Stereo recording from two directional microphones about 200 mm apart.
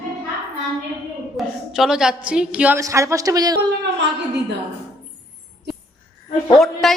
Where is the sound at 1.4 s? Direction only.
Centre (ahead or behind); by 3.6 s 20° right (ahead or behind).